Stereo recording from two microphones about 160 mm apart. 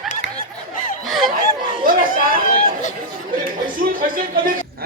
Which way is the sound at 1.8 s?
60° right (ahead or behind).